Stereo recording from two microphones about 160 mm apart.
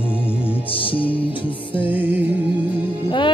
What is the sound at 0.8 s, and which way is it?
Speech, 35° left (ahead or behind).